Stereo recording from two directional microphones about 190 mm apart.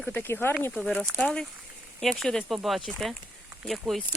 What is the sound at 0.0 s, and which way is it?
Speech, 10° left (ahead or behind).